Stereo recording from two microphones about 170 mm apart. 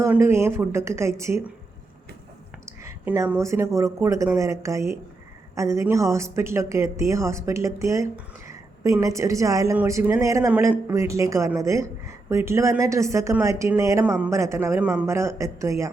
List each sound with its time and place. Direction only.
0.0 s a woman's voice: 15° right (ahead or behind)
2.8 s a woman's voice: 15° right (ahead or behind)